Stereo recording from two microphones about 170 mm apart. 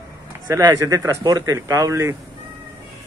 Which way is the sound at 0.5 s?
20° right (ahead or behind).